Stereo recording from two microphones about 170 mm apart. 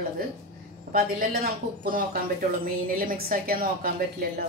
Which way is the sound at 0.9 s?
60° right (ahead or behind).